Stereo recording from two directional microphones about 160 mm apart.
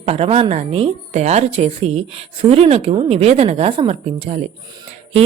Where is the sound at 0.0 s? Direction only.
40° right (ahead or behind).